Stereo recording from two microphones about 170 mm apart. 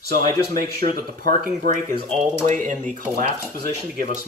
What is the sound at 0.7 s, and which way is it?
Speech, 55° right (ahead or behind).